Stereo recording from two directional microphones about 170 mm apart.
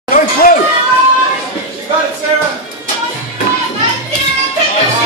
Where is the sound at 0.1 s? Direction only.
60° left (ahead or behind).